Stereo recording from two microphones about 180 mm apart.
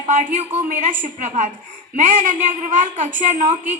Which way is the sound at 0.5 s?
45° right (ahead or behind).